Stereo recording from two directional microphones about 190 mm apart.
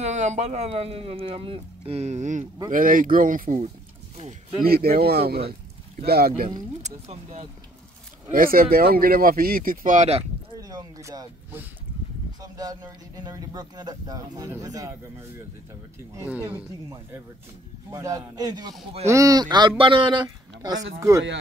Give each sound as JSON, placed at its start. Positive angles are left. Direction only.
{"t": 0.0, "sound": "speech", "side_deg": -40}
{"t": 4.2, "sound": "speech", "side_deg": -35}
{"t": 4.6, "sound": "speech", "side_deg": -50}
{"t": 7.1, "sound": "speech", "side_deg": -35}
{"t": 8.3, "sound": "speech", "side_deg": -50}
{"t": 10.6, "sound": "speech", "side_deg": -20}
{"t": 17.9, "sound": "speech", "side_deg": -15}